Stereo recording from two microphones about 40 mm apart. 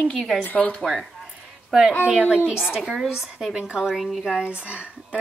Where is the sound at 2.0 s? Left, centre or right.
Right.